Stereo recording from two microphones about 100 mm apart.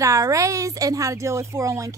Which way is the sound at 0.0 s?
35° right (ahead or behind).